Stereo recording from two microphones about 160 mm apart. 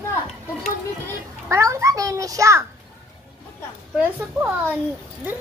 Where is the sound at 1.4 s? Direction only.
20° right (ahead or behind).